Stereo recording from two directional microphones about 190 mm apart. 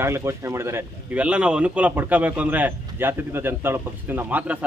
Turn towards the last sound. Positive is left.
turn(degrees=-10)  # may be behind; listen again after turning